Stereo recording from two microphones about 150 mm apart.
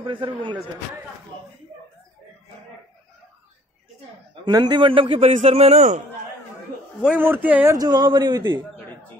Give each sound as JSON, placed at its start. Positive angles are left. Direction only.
{"t": 0.0, "sound": "a man's voice", "side_deg": -35}
{"t": 4.5, "sound": "a man's voice", "side_deg": -30}
{"t": 7.0, "sound": "a man's voice", "side_deg": -10}
{"t": 7.7, "sound": "a man's voice", "side_deg": -25}